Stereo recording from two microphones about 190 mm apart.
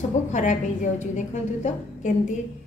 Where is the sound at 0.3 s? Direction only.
40° left (ahead or behind).